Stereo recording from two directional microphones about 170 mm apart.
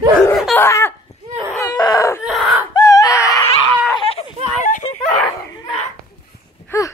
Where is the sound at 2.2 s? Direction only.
Centre (ahead or behind).